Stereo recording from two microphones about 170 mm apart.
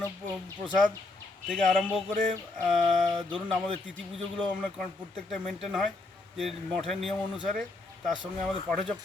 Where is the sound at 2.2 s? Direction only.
50° right (ahead or behind).